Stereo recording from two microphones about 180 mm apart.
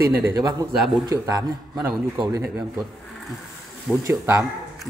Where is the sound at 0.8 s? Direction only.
Centre (ahead or behind).